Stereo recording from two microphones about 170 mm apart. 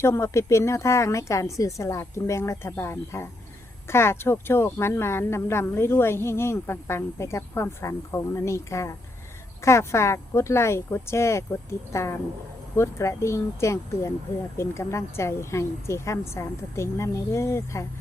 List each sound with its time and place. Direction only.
0.0 s speech: 15° left (ahead or behind)